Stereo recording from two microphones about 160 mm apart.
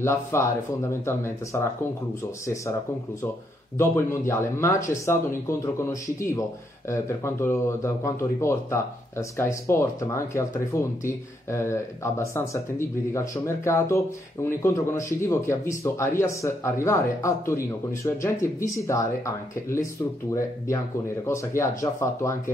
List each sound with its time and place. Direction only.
0.0 s speech: 15° left (ahead or behind)
3.7 s speech: 15° left (ahead or behind)
21.3 s speech: 20° left (ahead or behind)